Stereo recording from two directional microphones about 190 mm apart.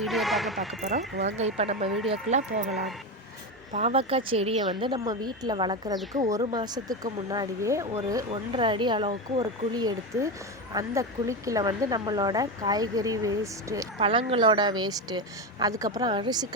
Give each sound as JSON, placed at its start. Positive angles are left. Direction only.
{"t": 0.0, "sound": "speech", "side_deg": 0}
{"t": 1.1, "sound": "speech", "side_deg": -60}
{"t": 1.4, "sound": "speech", "side_deg": -35}
{"t": 3.7, "sound": "speech", "side_deg": -40}
{"t": 8.3, "sound": "speech", "side_deg": -25}
{"t": 14.0, "sound": "speech", "side_deg": -30}